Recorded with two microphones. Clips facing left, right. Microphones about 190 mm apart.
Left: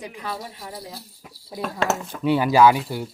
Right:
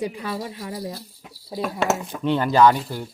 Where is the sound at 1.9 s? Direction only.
15° right (ahead or behind).